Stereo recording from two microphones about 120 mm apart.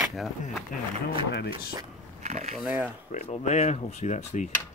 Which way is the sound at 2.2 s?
70° right (ahead or behind).